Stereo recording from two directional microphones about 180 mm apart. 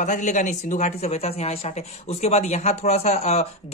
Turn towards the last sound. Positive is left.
turn(degrees=35)  # may be behind; listen again after turning